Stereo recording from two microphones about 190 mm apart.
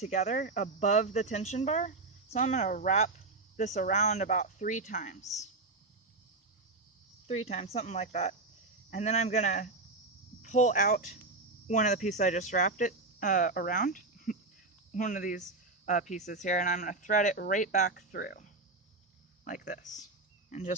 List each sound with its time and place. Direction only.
0.0 s speech: 40° left (ahead or behind)
7.3 s speech: 35° left (ahead or behind)